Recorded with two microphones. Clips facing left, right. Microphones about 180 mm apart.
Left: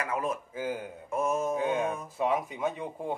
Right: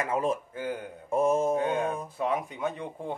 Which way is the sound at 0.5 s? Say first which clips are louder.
Even; centre (ahead or behind).